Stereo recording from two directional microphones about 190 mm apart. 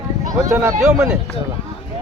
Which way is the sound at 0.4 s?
15° right (ahead or behind).